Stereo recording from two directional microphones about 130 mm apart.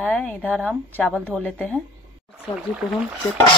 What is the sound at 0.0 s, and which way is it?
Speech, 5° left (ahead or behind).